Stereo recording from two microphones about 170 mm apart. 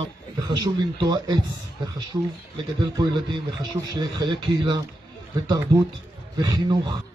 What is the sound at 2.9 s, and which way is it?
A man's voice, 25° right (ahead or behind).